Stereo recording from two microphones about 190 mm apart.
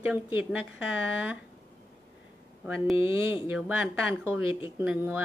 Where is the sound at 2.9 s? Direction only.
30° left (ahead or behind).